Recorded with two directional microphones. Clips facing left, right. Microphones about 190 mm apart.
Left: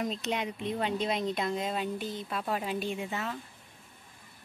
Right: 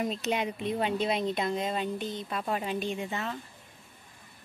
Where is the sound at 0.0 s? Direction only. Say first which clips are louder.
Right 2 dB; 5° right (ahead or behind).